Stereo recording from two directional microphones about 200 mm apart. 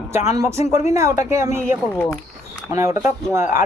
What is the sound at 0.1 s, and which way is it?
Speech, 15° right (ahead or behind).